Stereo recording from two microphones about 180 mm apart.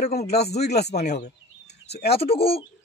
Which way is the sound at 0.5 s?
65° left (ahead or behind).